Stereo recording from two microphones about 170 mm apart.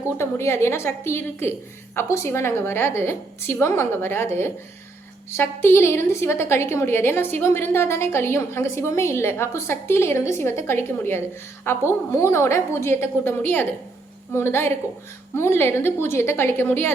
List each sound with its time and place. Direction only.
0.2 s a woman's voice: 15° left (ahead or behind)